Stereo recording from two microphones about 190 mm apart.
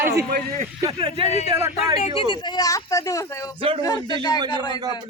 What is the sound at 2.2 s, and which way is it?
Speech, 25° left (ahead or behind).